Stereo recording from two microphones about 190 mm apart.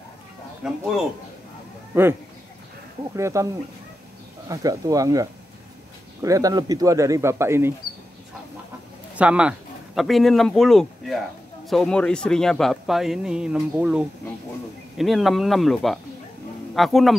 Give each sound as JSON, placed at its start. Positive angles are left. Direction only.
{"t": 0.6, "sound": "a man's voice", "side_deg": -5}
{"t": 1.9, "sound": "speech", "side_deg": -10}
{"t": 3.2, "sound": "speech", "side_deg": -15}
{"t": 4.5, "sound": "speech", "side_deg": -20}
{"t": 9.1, "sound": "a man's voice", "side_deg": -5}